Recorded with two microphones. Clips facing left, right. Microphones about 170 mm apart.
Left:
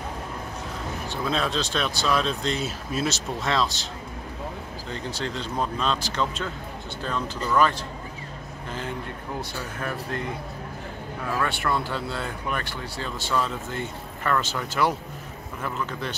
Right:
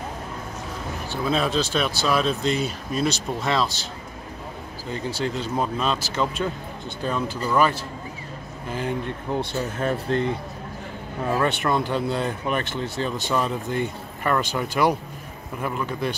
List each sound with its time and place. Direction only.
1.1 s speech: 5° right (ahead or behind)
4.9 s speech: 10° right (ahead or behind)
9.3 s speech: 25° right (ahead or behind)